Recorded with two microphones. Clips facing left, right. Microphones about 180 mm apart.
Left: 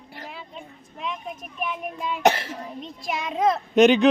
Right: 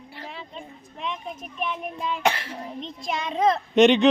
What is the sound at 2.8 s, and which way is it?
A child's voice, 5° left (ahead or behind).